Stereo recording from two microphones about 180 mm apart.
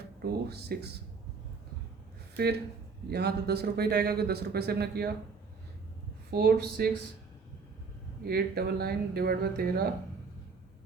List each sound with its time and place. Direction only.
0.2 s speech: 65° right (ahead or behind)
2.3 s speech: 60° right (ahead or behind)
6.3 s speech: 60° right (ahead or behind)
8.2 s speech: 60° right (ahead or behind)